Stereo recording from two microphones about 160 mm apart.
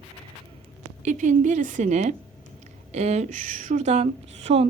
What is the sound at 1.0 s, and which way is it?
A woman's voice, 50° right (ahead or behind).